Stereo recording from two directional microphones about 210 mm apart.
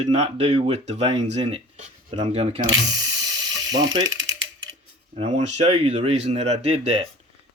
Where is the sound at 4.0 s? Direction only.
65° right (ahead or behind).